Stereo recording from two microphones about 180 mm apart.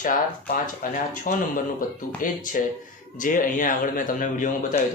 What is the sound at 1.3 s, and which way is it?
A man's voice, 50° left (ahead or behind).